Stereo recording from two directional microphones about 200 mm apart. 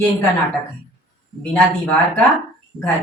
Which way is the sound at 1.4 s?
5° left (ahead or behind).